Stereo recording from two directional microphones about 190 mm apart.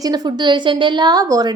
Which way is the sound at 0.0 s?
20° right (ahead or behind).